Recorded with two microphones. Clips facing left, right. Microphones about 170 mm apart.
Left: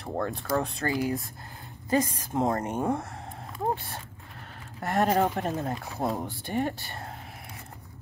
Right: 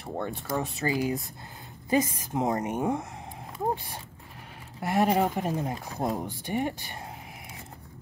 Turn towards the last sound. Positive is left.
turn(degrees=-15)  # may be behind; listen again after turning